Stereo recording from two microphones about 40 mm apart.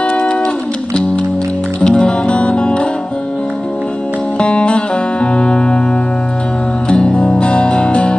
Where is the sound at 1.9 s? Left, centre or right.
Left.